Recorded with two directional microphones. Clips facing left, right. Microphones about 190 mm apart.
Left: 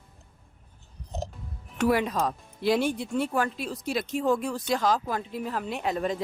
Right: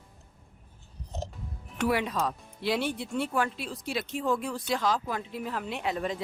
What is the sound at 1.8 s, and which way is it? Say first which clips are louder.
Speech: left 3 dB; 45° left (ahead or behind).